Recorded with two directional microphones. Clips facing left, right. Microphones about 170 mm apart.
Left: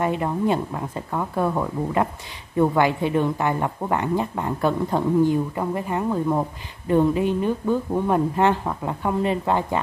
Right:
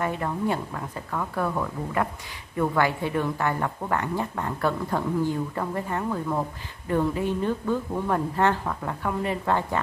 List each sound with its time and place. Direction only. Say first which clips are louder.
0.0 s speech: left 4 dB; 20° left (ahead or behind)